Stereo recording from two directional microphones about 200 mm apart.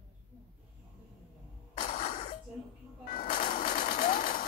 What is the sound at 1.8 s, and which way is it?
Cough, 40° left (ahead or behind).